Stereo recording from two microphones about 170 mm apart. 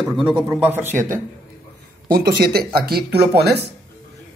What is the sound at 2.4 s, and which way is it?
Speech, 65° right (ahead or behind).